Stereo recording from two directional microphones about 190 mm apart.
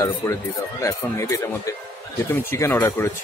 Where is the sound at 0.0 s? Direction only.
15° left (ahead or behind).